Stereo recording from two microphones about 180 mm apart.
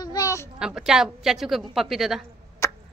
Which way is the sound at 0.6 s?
5° right (ahead or behind).